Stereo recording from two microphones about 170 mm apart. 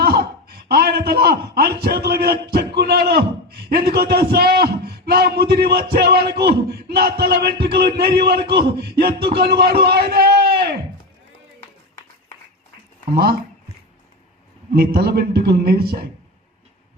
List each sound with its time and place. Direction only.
0.0 s a man's voice: 70° right (ahead or behind)
14.7 s a man's voice: 70° right (ahead or behind)